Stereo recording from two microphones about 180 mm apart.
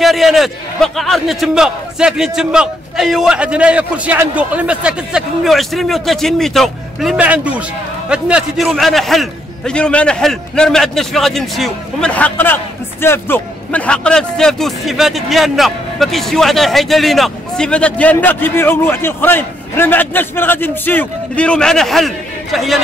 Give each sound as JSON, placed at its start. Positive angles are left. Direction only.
{"t": 0.0, "sound": "a man's voice", "side_deg": 0}